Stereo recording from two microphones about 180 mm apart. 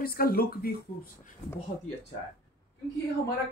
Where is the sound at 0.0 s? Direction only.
55° left (ahead or behind).